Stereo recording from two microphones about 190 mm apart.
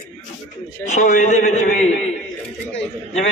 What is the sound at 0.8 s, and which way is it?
A man's voice, 40° left (ahead or behind).